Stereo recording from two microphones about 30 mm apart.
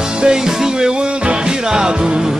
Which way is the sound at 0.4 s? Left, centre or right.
Centre.